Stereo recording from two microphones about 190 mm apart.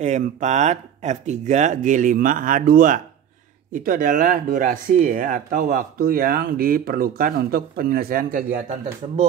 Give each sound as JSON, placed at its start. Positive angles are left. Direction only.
{"t": 0.0, "sound": "speech", "side_deg": -40}